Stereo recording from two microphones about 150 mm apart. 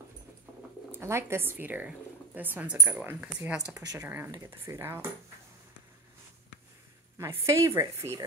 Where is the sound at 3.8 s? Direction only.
25° right (ahead or behind).